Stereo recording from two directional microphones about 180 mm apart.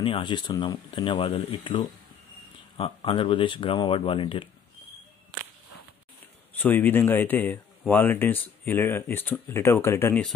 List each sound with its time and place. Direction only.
0.0 s speech: 25° left (ahead or behind)
6.5 s speech: 10° left (ahead or behind)